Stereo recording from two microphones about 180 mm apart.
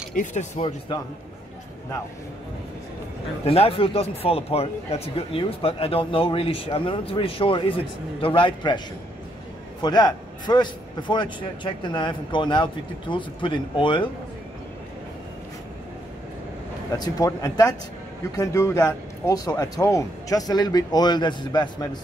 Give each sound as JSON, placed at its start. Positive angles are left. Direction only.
{"t": 0.1, "sound": "speech", "side_deg": 45}
{"t": 3.4, "sound": "a man's voice", "side_deg": 35}
{"t": 16.9, "sound": "a man's voice", "side_deg": 20}